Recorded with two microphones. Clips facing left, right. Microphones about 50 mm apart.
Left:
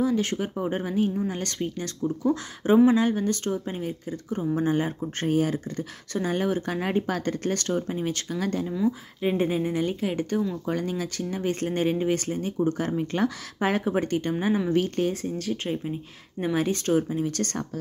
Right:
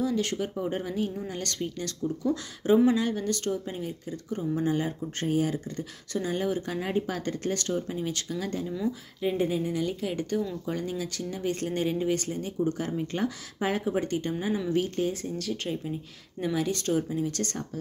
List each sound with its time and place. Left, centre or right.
0.0 s speech: left
7.9 s speech: left
8.4 s speech: left
9.2 s speech: left
10.7 s speech: left
11.1 s speech: left
12.9 s speech: left
15.3 s speech: left